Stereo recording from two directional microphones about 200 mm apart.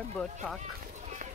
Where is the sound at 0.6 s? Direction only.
35° right (ahead or behind).